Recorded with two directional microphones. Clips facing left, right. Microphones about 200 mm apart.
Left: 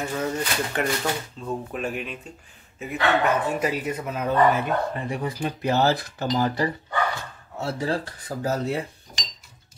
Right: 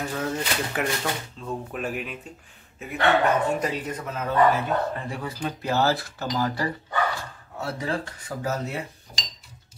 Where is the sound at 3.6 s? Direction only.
10° left (ahead or behind).